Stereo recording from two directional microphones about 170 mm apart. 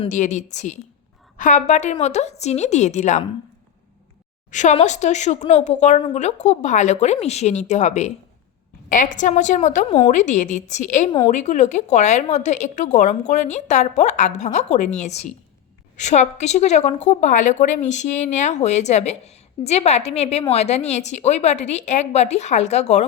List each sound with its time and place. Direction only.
0.1 s a woman's voice: 45° left (ahead or behind)
4.5 s a woman's voice: 40° left (ahead or behind)